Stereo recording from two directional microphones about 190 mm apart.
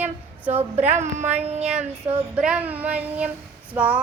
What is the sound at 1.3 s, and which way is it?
Speech, 35° right (ahead or behind).